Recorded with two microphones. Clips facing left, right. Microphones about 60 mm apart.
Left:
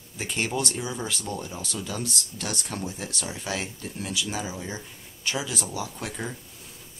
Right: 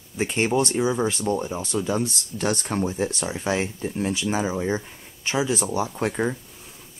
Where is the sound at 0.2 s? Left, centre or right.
Right.